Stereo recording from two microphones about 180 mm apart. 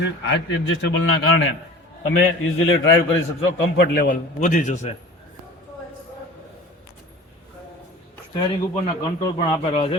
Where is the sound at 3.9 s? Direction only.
50° left (ahead or behind).